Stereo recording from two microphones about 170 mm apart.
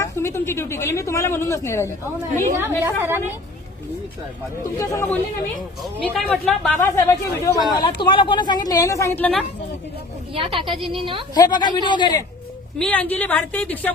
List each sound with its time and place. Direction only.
0.0 s a woman's voice: 15° left (ahead or behind)
2.3 s a woman's voice: 45° right (ahead or behind)
2.6 s a woman's voice: 15° right (ahead or behind)
4.8 s speech: 15° left (ahead or behind)
5.8 s a woman's voice: centre (ahead or behind)
10.3 s a woman's voice: 30° right (ahead or behind)
11.3 s a woman's voice: 25° left (ahead or behind)
12.8 s speech: 10° left (ahead or behind)